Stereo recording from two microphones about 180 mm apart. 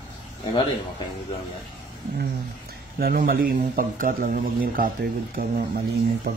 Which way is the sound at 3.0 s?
55° right (ahead or behind).